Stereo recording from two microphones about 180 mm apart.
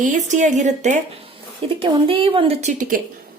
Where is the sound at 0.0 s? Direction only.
45° right (ahead or behind).